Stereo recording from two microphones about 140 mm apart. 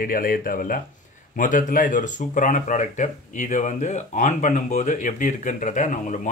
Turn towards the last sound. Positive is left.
turn(degrees=60)  # may be behind; listen again after turning